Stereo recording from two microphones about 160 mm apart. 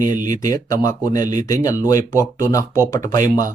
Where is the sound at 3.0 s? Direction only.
55° right (ahead or behind).